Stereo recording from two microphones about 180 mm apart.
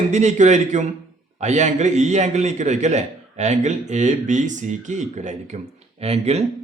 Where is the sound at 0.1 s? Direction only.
40° right (ahead or behind).